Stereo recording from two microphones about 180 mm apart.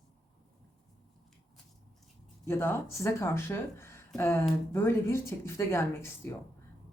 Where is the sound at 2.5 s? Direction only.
15° left (ahead or behind).